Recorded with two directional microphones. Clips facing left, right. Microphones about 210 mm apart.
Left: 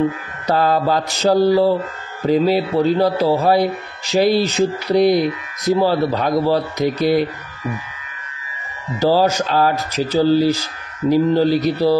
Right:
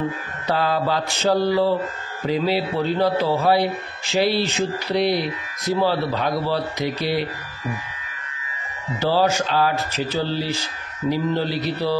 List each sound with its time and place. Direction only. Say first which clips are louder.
0.5 s speech: left 5 dB; 45° left (ahead or behind)
9.0 s speech: left 4 dB; 40° left (ahead or behind)